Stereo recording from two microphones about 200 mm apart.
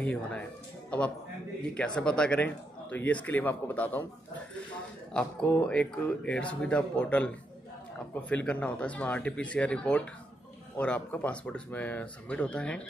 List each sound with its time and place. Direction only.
0.0 s a man's voice: 5° left (ahead or behind)
5.1 s a man's voice: 5° left (ahead or behind)